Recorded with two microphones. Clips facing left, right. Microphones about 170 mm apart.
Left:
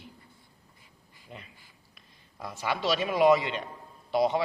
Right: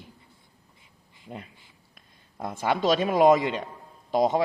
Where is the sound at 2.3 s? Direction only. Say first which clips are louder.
Right 6 dB; 50° right (ahead or behind).